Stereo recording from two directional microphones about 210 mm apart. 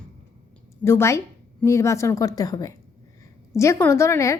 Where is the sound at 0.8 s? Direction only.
10° left (ahead or behind).